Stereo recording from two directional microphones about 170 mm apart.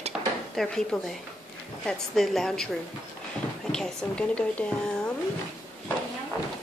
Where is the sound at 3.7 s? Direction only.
5° left (ahead or behind).